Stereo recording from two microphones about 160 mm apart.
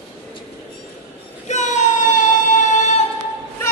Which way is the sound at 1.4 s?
45° left (ahead or behind).